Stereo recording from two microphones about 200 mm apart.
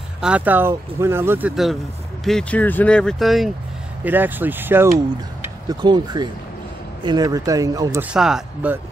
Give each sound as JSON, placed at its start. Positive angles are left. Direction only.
{"t": 0.2, "sound": "speech", "side_deg": -5}
{"t": 2.2, "sound": "speech", "side_deg": 5}
{"t": 5.7, "sound": "speech", "side_deg": -20}